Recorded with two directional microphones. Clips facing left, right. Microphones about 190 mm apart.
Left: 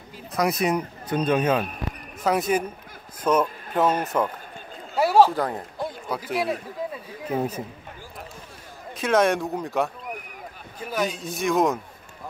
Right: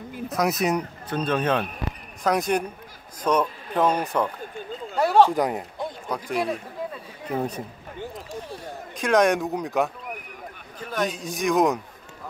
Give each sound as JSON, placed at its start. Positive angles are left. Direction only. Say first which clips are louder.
{"t": 0.3, "sound": "speech", "louder": "even", "side_deg": 0}
{"t": 1.0, "sound": "a man's voice", "louder": "left 3 dB", "side_deg": 15}
{"t": 5.3, "sound": "speech", "louder": "right 3 dB", "side_deg": -15}
{"t": 5.8, "sound": "a sound", "louder": "left 1 dB", "side_deg": 5}
{"t": 7.2, "sound": "speech", "louder": "left 1 dB", "side_deg": 5}
{"t": 9.0, "sound": "speech", "louder": "right 1 dB", "side_deg": 0}